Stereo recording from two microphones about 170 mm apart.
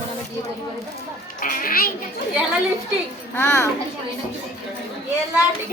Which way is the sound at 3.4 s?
15° left (ahead or behind).